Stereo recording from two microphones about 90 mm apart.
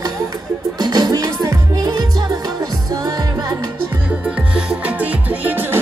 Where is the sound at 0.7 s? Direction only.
50° right (ahead or behind).